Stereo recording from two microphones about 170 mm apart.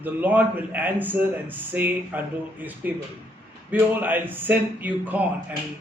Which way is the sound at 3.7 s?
10° right (ahead or behind).